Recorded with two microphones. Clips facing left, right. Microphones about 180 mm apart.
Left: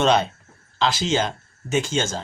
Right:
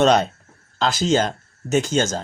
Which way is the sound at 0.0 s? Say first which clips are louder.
Right 3 dB; 45° right (ahead or behind).